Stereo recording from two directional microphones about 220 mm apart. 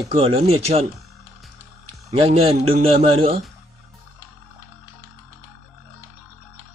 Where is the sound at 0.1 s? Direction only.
25° right (ahead or behind).